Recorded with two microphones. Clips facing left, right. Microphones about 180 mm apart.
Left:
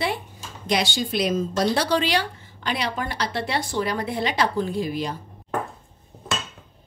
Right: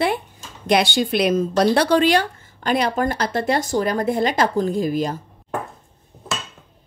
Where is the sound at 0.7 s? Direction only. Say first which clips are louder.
Right 6 dB; 60° right (ahead or behind).